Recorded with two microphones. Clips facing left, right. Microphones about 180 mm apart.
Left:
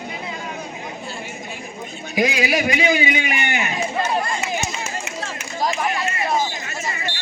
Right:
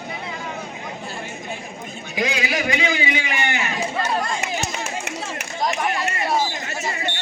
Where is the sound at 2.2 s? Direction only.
20° left (ahead or behind).